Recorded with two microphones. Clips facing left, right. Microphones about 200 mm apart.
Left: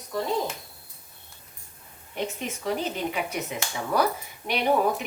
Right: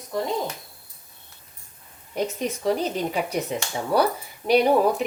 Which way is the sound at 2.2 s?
40° right (ahead or behind).